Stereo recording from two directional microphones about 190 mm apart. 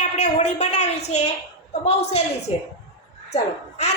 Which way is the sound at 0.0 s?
40° left (ahead or behind).